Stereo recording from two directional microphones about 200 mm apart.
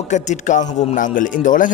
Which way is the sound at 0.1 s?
35° left (ahead or behind).